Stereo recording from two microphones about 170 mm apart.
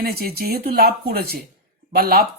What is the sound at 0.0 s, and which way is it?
Speech, 65° right (ahead or behind).